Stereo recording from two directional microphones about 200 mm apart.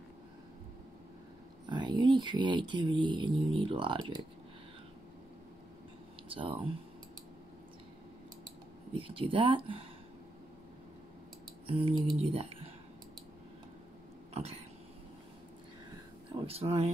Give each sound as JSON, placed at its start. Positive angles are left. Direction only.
{"t": 1.7, "sound": "speech", "side_deg": -25}
{"t": 6.2, "sound": "speech", "side_deg": -25}
{"t": 8.9, "sound": "speech", "side_deg": -25}
{"t": 11.6, "sound": "speech", "side_deg": -25}
{"t": 14.3, "sound": "a sound", "side_deg": -30}
{"t": 16.3, "sound": "speech", "side_deg": -25}